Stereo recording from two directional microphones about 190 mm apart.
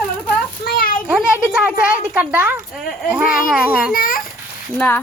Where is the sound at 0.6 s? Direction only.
50° left (ahead or behind).